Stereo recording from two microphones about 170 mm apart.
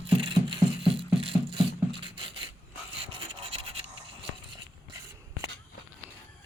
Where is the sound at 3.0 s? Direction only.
30° right (ahead or behind).